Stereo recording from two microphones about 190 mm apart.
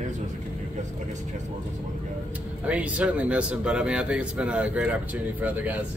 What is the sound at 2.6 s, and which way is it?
Speech, 5° right (ahead or behind).